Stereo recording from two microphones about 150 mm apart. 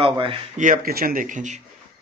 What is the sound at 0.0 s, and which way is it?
Speech, 35° right (ahead or behind).